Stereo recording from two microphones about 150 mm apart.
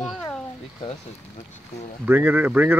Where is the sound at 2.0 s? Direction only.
15° right (ahead or behind).